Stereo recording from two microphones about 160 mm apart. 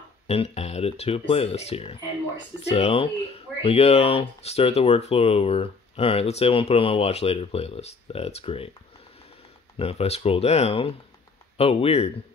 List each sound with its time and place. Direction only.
0.3 s speech: 40° left (ahead or behind)
9.8 s speech: 40° left (ahead or behind)